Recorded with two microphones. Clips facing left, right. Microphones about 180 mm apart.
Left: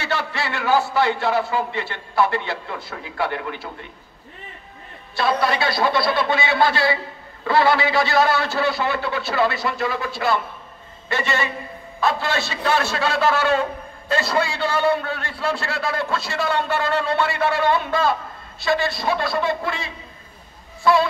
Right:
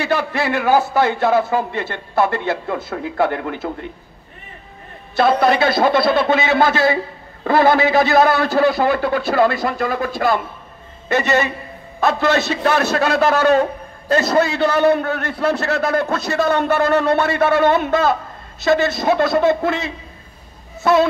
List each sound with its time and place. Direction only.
0.3 s a man's voice: 45° right (ahead or behind)
5.1 s a man's voice: 45° right (ahead or behind)